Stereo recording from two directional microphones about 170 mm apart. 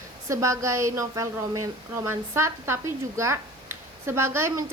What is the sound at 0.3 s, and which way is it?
A woman's voice, 15° right (ahead or behind).